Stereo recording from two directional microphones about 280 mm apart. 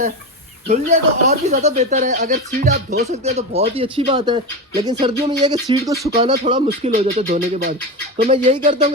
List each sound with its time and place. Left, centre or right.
0.7 s speech: right
3.2 s speech: right
6.5 s speech: right